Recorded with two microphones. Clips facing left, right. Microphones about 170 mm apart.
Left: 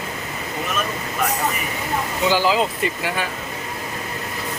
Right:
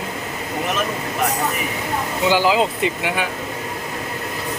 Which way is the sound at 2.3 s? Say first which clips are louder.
Right 2 dB; 15° right (ahead or behind).